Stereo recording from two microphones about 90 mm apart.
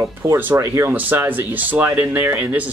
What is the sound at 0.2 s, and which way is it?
Speech, 35° right (ahead or behind).